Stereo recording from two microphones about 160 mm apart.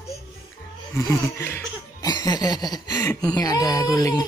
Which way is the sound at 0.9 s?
15° left (ahead or behind).